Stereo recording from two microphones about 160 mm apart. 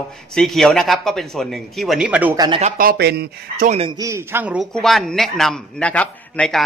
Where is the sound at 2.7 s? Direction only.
80° right.